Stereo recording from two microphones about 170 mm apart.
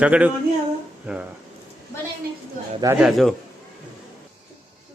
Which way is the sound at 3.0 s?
Centre (ahead or behind).